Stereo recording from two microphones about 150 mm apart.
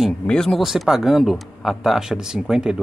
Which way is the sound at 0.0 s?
5° left (ahead or behind).